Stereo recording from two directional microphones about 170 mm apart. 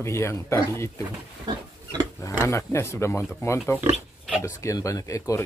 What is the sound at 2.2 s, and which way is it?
Speech, 15° left (ahead or behind).